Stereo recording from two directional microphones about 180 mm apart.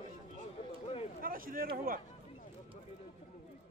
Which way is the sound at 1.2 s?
55° right (ahead or behind).